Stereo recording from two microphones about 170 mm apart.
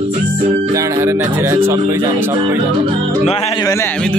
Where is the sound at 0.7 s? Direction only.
20° right (ahead or behind).